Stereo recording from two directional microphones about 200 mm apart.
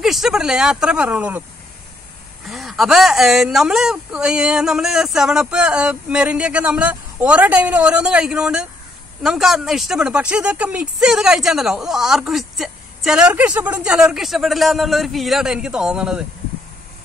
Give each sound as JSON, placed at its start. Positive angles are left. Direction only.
{"t": 0.0, "sound": "speech", "side_deg": 0}
{"t": 2.4, "sound": "speech", "side_deg": 0}